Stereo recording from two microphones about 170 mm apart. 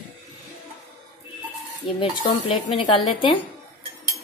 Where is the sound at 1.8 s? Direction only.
30° left (ahead or behind).